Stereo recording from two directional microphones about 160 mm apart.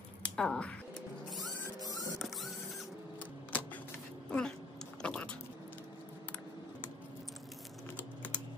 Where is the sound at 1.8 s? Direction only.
20° left (ahead or behind).